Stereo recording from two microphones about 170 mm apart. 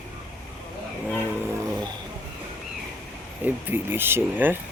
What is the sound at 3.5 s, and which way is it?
Speech, 10° right (ahead or behind).